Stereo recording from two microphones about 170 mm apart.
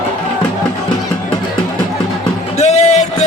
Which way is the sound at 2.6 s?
40° left (ahead or behind).